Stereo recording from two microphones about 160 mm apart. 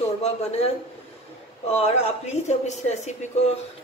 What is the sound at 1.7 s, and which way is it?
Speech, 40° left (ahead or behind).